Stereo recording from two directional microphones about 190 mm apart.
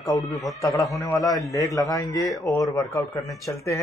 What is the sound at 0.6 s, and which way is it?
Speech, centre (ahead or behind).